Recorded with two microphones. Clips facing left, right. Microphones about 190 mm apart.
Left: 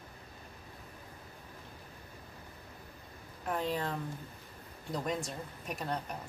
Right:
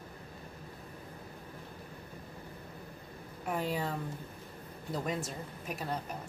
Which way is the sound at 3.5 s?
10° right (ahead or behind).